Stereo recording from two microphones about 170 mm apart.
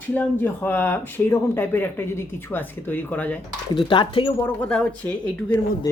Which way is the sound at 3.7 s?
30° left (ahead or behind).